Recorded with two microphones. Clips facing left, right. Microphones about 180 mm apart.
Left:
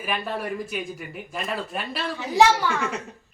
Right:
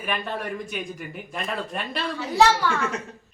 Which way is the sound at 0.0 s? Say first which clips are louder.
Left 1 dB; centre (ahead or behind).